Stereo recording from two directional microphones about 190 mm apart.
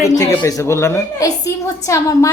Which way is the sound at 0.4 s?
15° left (ahead or behind).